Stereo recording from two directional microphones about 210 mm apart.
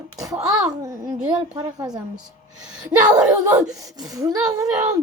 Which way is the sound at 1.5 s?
20° right (ahead or behind).